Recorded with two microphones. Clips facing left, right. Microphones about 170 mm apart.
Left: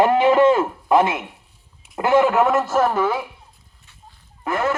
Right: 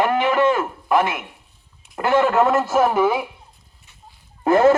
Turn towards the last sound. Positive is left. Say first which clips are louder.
# right 8 dB
turn(degrees=-30)  # may be behind; listen again after turning